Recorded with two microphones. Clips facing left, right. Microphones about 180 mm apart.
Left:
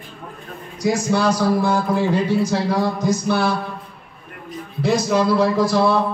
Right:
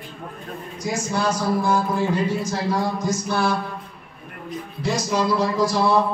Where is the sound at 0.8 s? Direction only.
70° left (ahead or behind).